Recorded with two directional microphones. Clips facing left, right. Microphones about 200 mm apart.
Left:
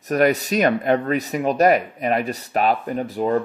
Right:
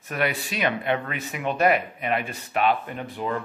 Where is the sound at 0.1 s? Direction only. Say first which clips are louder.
Left 9 dB; 40° left (ahead or behind).